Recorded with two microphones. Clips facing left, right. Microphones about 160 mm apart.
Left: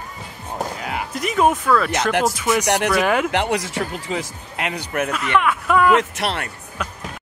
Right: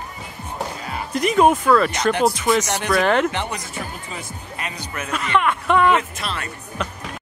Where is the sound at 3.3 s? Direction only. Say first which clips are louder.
Left 6 dB; 70° left (ahead or behind).